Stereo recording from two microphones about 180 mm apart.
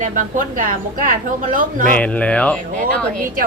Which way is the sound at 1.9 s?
5° left (ahead or behind).